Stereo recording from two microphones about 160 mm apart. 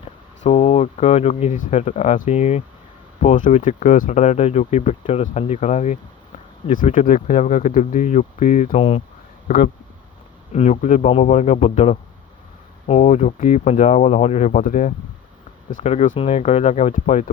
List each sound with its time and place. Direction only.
0.0 s speech: 40° left (ahead or behind)
3.2 s speech: 55° left (ahead or behind)
10.5 s speech: 45° left (ahead or behind)
16.9 s speech: 55° left (ahead or behind)